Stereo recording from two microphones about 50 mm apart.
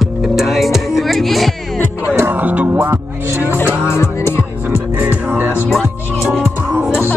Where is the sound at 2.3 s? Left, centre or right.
Right.